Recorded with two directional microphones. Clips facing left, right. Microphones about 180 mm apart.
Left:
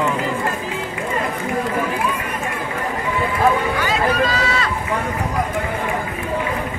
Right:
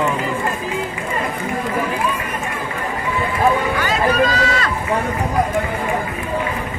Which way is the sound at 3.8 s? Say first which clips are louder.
Right 2 dB; 45° right (ahead or behind).